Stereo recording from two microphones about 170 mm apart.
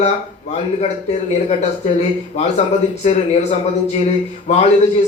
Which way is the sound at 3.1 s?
40° left (ahead or behind).